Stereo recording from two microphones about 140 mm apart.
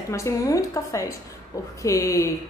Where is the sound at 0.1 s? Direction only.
25° left (ahead or behind).